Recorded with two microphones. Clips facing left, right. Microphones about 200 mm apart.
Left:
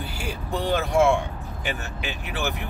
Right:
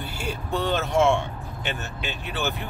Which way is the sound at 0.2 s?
10° left (ahead or behind).